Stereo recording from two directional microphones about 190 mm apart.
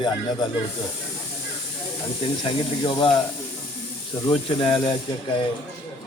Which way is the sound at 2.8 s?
25° left (ahead or behind).